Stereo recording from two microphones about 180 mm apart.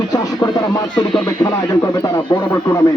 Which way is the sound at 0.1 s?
20° left (ahead or behind).